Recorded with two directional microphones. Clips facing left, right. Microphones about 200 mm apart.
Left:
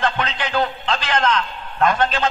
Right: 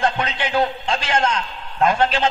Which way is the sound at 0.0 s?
25° right (ahead or behind).